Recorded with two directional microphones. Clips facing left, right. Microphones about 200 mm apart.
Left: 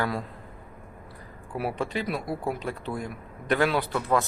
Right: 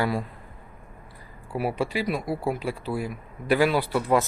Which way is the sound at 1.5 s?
5° right (ahead or behind).